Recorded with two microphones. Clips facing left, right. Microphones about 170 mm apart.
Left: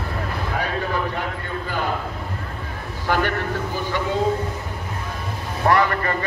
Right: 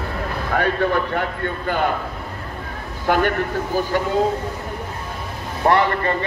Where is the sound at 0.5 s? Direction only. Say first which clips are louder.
Right 7 dB; 65° right (ahead or behind).